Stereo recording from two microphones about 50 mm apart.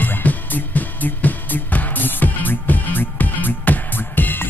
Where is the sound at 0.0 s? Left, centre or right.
Left.